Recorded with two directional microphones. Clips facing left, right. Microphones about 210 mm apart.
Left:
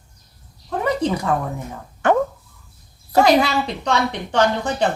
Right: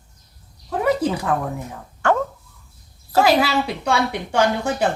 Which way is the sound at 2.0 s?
20° left (ahead or behind).